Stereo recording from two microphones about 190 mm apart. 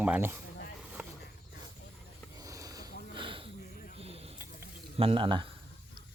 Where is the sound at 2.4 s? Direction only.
15° right (ahead or behind).